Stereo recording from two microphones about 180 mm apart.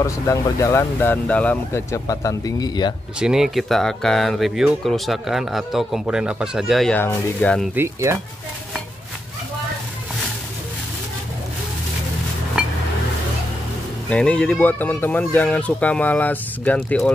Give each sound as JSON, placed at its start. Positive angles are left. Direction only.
{"t": 0.0, "sound": "speech", "side_deg": 15}
{"t": 3.2, "sound": "speech", "side_deg": -5}
{"t": 7.7, "sound": "speech", "side_deg": -15}
{"t": 12.6, "sound": "a sound", "side_deg": -5}
{"t": 14.0, "sound": "speech", "side_deg": 5}